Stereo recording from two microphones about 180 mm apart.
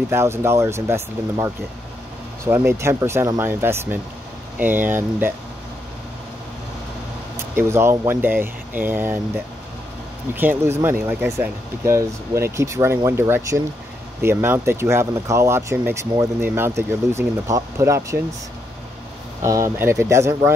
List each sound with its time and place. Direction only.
0.1 s speech: 15° right (ahead or behind)
7.5 s speech: 15° right (ahead or behind)
10.3 s speech: 10° right (ahead or behind)
19.4 s speech: 15° right (ahead or behind)